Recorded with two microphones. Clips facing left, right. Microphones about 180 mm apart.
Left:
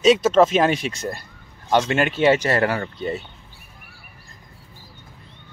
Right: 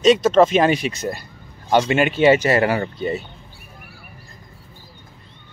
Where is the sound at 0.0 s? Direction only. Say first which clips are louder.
Right 1 dB; 5° left (ahead or behind).